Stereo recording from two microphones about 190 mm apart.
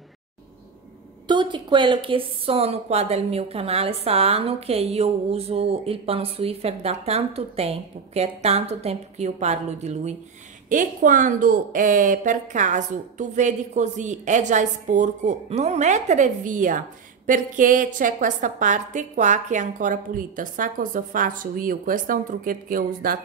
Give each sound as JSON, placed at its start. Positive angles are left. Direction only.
{"t": 1.2, "sound": "a woman's voice", "side_deg": -25}